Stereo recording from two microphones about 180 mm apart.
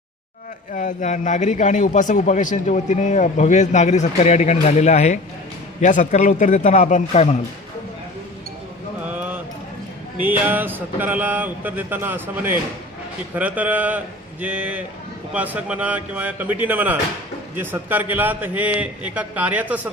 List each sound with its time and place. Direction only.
0.7 s a man's voice: 45° left (ahead or behind)
9.0 s a sound: 10° right (ahead or behind)
10.2 s a man's voice: 10° right (ahead or behind)